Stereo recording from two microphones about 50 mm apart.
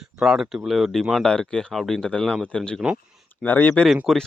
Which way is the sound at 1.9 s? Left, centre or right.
Centre.